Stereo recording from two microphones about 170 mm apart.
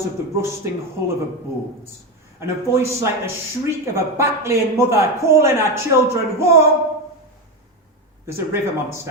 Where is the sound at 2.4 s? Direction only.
15° right (ahead or behind).